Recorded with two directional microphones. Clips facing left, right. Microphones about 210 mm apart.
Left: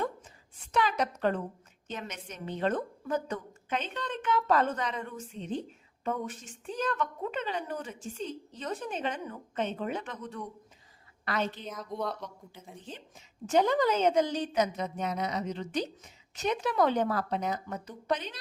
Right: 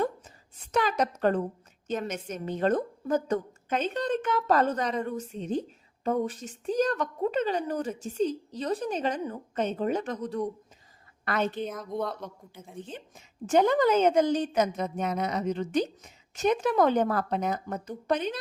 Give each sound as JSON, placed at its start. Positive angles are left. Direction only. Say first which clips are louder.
{"t": 0.6, "sound": "a woman's voice", "louder": "right 3 dB", "side_deg": -45}
{"t": 11.3, "sound": "a woman's voice", "louder": "right 4 dB", "side_deg": -55}
{"t": 13.1, "sound": "a woman's voice", "louder": "right 3 dB", "side_deg": -50}